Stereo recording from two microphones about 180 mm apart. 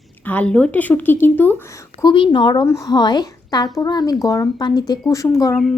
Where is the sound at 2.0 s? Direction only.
25° left (ahead or behind).